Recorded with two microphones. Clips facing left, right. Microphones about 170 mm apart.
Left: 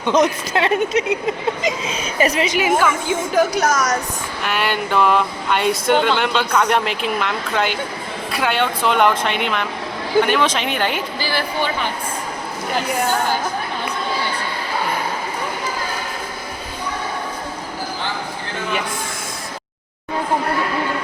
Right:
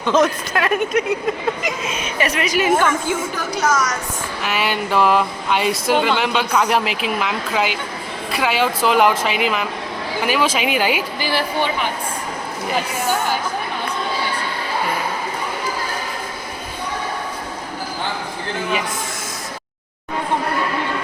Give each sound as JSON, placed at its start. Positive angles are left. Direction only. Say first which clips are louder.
{"t": 0.0, "sound": "speech", "louder": "even", "side_deg": 15}
{"t": 2.6, "sound": "a woman's voice", "louder": "right 2 dB", "side_deg": 10}
{"t": 3.3, "sound": "a woman's voice", "louder": "left 7 dB", "side_deg": 40}
{"t": 4.4, "sound": "speech", "louder": "even", "side_deg": 0}